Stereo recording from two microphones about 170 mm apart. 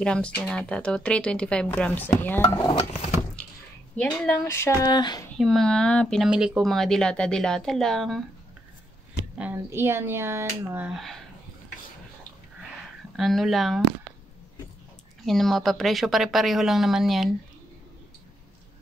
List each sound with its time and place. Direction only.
0.0 s speech: 5° left (ahead or behind)
2.7 s a sound: 35° left (ahead or behind)
3.4 s a sound: 5° left (ahead or behind)
4.5 s speech: 15° left (ahead or behind)
5.4 s speech: centre (ahead or behind)
9.4 s speech: 10° right (ahead or behind)
13.1 s speech: centre (ahead or behind)
15.2 s speech: centre (ahead or behind)